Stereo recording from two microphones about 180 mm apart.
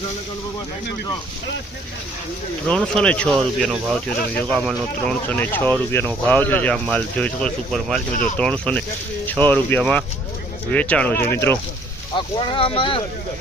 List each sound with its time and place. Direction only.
2.6 s speech: 5° left (ahead or behind)
12.1 s speech: 30° left (ahead or behind)